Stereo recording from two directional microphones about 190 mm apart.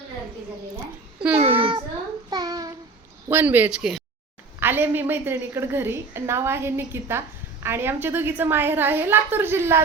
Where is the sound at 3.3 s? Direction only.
10° right (ahead or behind).